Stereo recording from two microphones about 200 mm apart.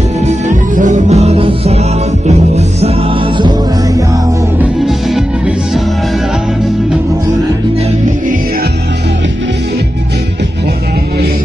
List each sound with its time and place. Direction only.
0.3 s music: 40° right (ahead or behind)
3.3 s music: 20° right (ahead or behind)
4.6 s music: centre (ahead or behind)